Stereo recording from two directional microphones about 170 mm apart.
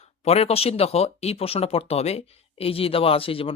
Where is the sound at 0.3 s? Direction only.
35° left (ahead or behind).